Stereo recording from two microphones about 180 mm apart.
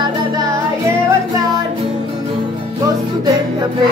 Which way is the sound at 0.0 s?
20° right (ahead or behind).